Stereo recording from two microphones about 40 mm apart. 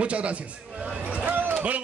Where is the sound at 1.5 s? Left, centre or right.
Right.